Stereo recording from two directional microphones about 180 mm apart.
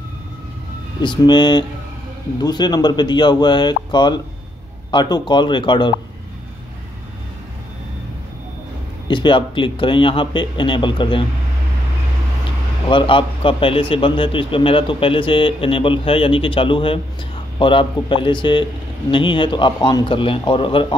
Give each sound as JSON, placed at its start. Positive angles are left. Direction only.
{"t": 1.0, "sound": "a man's voice", "side_deg": 25}
{"t": 9.0, "sound": "a man's voice", "side_deg": 25}
{"t": 12.9, "sound": "a man's voice", "side_deg": 30}